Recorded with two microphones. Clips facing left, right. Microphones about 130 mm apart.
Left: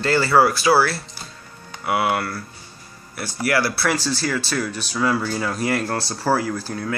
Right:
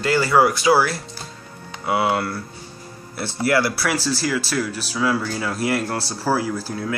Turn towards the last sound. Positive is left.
turn(degrees=-5)  # may be behind; listen again after turning